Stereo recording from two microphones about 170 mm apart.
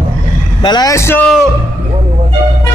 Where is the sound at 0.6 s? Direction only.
25° left (ahead or behind).